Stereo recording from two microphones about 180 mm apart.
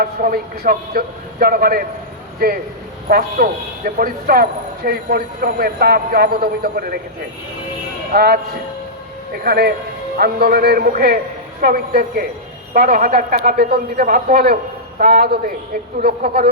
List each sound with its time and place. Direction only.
0.0 s a man's voice: 55° right (ahead or behind)
3.1 s a man's voice: 55° right (ahead or behind)
8.1 s a man's voice: 60° right (ahead or behind)
9.4 s a man's voice: 60° right (ahead or behind)